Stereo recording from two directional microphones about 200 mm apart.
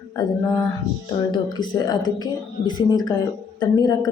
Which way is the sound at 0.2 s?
20° left (ahead or behind).